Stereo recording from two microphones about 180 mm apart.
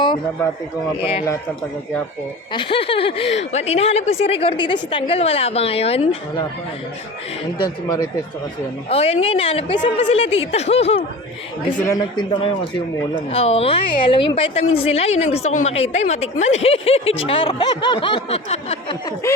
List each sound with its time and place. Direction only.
2.5 s a woman's voice: 30° left (ahead or behind)
7.6 s speech: 20° left (ahead or behind)
8.9 s a woman's voice: 35° left (ahead or behind)
11.9 s a woman's voice: 25° left (ahead or behind)